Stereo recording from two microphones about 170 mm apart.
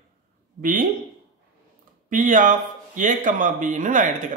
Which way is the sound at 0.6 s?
55° right (ahead or behind).